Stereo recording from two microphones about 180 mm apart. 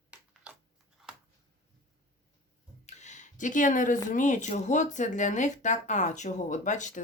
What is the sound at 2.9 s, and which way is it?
Speech, 40° left (ahead or behind).